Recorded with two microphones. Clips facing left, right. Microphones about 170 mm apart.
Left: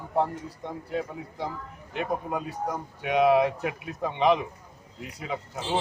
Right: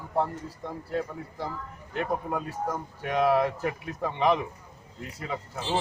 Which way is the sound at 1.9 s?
5° left (ahead or behind).